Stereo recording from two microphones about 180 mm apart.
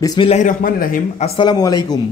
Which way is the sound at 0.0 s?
20° left (ahead or behind).